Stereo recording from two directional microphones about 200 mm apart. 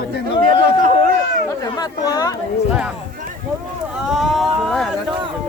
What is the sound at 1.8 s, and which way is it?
Speech, 20° left (ahead or behind).